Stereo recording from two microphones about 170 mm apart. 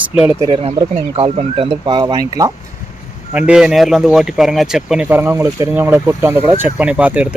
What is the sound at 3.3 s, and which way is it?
Speech, 5° right (ahead or behind).